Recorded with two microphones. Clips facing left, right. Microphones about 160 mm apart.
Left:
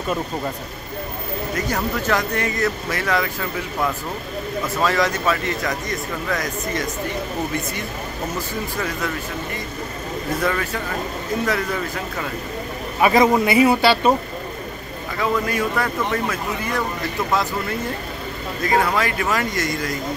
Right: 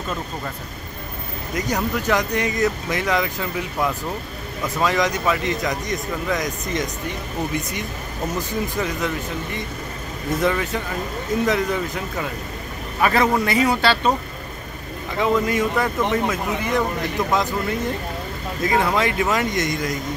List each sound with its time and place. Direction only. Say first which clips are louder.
1.5 s speech: right 2 dB; 15° right (ahead or behind)
8.7 s speech: even; 20° right (ahead or behind)
10.4 s speech: right 3 dB; 20° right (ahead or behind)
13.0 s a man's voice: left 3 dB; 15° left (ahead or behind)
15.1 s speech: right 2 dB; 20° right (ahead or behind)
18.8 s speech: right 1 dB; 20° right (ahead or behind)